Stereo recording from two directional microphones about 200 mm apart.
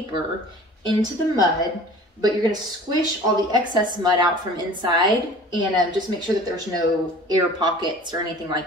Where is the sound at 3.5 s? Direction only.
20° right (ahead or behind).